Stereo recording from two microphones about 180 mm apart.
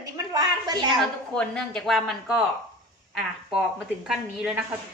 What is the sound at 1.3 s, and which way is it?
Speech, 5° left (ahead or behind).